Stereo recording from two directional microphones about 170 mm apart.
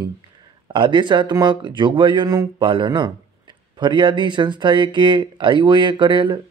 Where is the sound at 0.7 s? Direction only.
25° right (ahead or behind).